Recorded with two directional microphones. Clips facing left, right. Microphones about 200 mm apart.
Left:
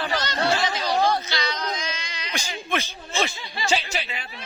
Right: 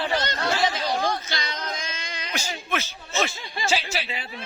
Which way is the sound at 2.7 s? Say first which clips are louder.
Left 1 dB; 5° right (ahead or behind).